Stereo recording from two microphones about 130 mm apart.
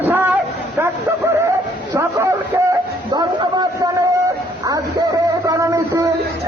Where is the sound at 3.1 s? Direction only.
30° right (ahead or behind).